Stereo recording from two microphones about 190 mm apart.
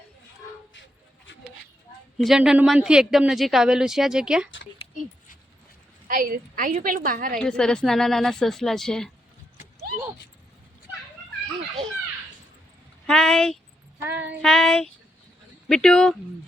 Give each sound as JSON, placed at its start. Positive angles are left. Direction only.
{"t": 2.1, "sound": "speech", "side_deg": 0}
{"t": 6.1, "sound": "a woman's voice", "side_deg": -45}
{"t": 7.3, "sound": "speech", "side_deg": 5}
{"t": 13.1, "sound": "speech", "side_deg": 5}
{"t": 14.0, "sound": "child singing", "side_deg": -10}
{"t": 14.4, "sound": "speech", "side_deg": 0}